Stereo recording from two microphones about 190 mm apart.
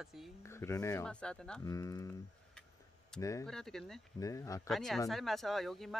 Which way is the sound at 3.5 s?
Centre (ahead or behind).